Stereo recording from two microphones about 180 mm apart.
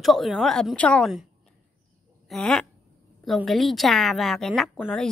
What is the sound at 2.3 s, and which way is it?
A woman's voice, 5° left (ahead or behind).